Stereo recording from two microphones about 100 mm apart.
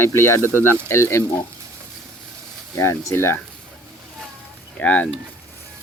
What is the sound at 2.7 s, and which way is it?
Speech, 30° left (ahead or behind).